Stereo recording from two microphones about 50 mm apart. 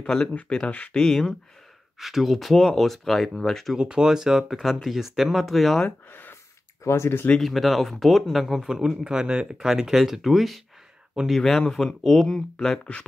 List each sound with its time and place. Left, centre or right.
0.0 s speech: centre
0.3 s speech: left
0.9 s speech: centre
2.0 s speech: centre
3.7 s speech: centre
5.9 s speech: left
6.8 s speech: left
7.3 s speech: centre